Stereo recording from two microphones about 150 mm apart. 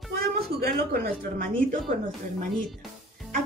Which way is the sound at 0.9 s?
80° right.